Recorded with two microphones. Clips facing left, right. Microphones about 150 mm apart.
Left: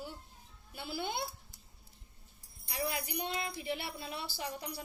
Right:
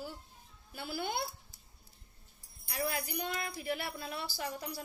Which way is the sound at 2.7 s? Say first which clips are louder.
Right 1 dB; 20° left (ahead or behind).